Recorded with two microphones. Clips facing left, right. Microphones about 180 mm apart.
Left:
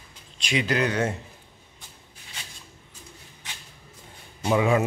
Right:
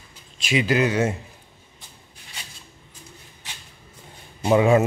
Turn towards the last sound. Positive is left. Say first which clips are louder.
# right 5 dB
turn(degrees=-30)  # may be behind; listen again after turning